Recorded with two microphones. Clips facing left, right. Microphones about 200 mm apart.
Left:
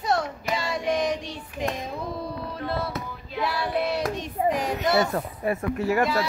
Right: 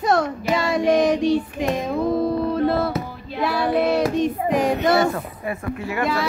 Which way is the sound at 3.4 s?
55° right (ahead or behind).